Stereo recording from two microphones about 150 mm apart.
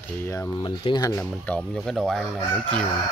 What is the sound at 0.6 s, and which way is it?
Speech, 30° left (ahead or behind).